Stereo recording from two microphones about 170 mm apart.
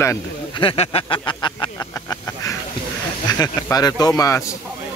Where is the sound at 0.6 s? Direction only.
35° left (ahead or behind).